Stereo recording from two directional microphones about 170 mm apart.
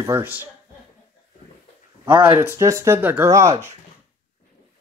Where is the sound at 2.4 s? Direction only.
15° right (ahead or behind).